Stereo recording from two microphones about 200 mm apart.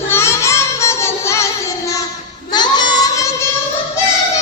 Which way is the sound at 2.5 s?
20° left (ahead or behind).